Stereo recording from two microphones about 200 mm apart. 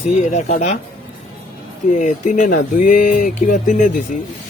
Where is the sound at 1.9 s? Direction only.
40° left (ahead or behind).